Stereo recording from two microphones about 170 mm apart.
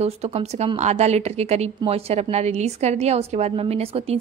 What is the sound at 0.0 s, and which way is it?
A woman's voice, 40° right (ahead or behind).